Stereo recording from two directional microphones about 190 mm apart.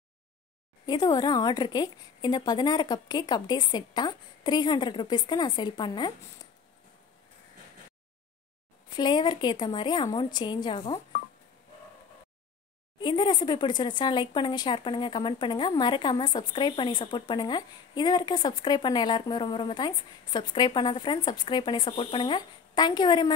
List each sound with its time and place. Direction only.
0.8 s speech: 20° left (ahead or behind)
8.8 s speech: 25° left (ahead or behind)
13.0 s speech: 25° left (ahead or behind)